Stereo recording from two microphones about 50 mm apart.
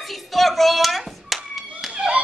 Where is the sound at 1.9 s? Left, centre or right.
Right.